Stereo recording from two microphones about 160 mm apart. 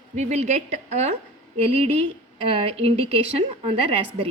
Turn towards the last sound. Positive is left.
turn(degrees=-35)  # may be behind; listen again after turning